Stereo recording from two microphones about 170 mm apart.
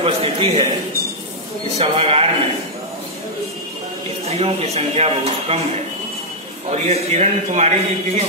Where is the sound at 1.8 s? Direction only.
35° right (ahead or behind).